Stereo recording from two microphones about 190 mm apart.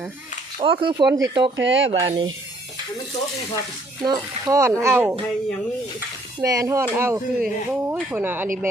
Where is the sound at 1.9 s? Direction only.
25° right (ahead or behind).